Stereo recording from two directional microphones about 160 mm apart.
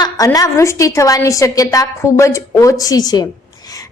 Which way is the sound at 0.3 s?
20° left (ahead or behind).